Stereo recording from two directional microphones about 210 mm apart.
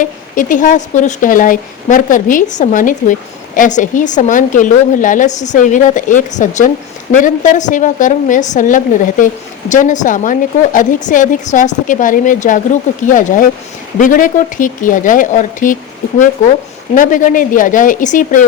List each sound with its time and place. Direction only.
0.0 s speech: 40° left (ahead or behind)
16.9 s speech: 40° left (ahead or behind)